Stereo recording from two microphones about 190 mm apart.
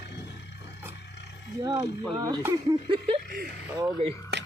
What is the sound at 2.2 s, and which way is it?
Speech, 20° right (ahead or behind).